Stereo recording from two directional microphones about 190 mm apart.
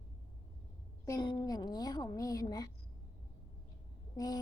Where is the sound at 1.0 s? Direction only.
20° left (ahead or behind).